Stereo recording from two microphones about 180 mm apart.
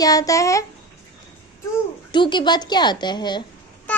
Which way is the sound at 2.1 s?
25° left (ahead or behind).